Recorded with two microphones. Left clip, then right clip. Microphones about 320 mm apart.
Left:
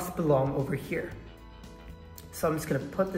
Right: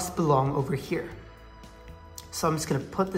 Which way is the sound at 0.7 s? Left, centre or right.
Centre.